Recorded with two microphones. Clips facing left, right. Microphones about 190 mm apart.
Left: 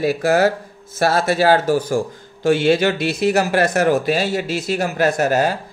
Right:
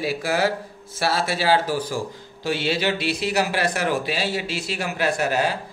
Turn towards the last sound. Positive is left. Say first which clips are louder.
# left 5 dB
turn(degrees=45)  # may be behind; listen again after turning